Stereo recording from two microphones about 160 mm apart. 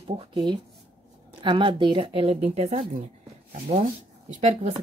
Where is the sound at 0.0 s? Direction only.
35° right (ahead or behind).